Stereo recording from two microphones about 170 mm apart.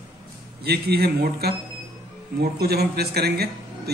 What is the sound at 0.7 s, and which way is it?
Speech, 70° right (ahead or behind).